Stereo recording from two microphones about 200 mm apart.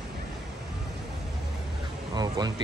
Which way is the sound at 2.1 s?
20° right (ahead or behind).